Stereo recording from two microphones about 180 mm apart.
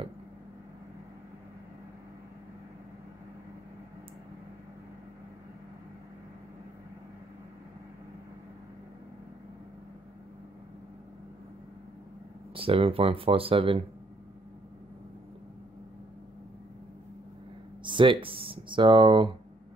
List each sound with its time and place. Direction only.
12.5 s speech: 30° right (ahead or behind)
17.8 s speech: 25° right (ahead or behind)